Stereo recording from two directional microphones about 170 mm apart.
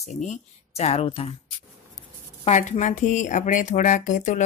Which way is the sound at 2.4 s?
40° left (ahead or behind).